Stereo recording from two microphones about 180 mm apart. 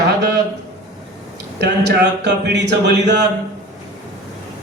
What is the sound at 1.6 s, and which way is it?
Speech, 65° right (ahead or behind).